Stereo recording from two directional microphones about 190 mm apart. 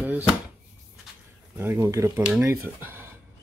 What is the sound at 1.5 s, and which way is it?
Speech, 10° right (ahead or behind).